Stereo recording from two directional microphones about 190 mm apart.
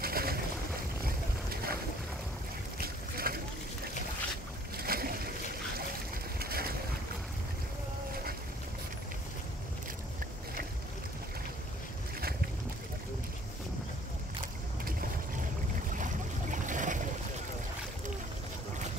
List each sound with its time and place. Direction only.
0.0 s boat: 50° right (ahead or behind)
2.8 s boat: 50° right (ahead or behind)
4.7 s boat: 50° right (ahead or behind)
6.4 s boat: 55° right (ahead or behind)
15.9 s boat: 40° right (ahead or behind)